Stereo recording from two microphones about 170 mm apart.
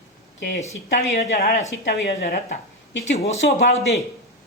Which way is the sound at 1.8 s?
75° left (ahead or behind).